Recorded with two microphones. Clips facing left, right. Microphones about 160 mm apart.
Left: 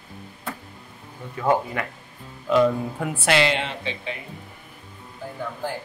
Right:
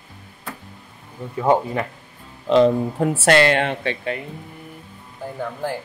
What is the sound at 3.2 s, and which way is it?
Speech, 50° right (ahead or behind).